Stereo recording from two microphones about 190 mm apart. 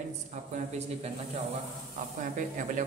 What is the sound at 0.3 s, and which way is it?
Speech, 40° right (ahead or behind).